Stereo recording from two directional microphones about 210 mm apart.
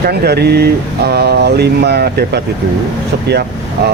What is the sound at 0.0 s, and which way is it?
Speech, 50° right (ahead or behind).